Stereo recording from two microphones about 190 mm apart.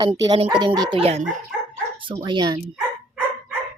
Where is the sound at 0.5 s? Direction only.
25° right (ahead or behind).